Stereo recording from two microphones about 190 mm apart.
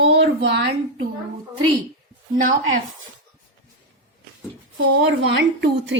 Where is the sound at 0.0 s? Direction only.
70° right (ahead or behind).